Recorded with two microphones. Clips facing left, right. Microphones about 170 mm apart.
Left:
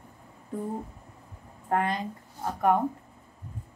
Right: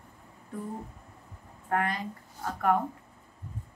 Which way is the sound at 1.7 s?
25° left (ahead or behind).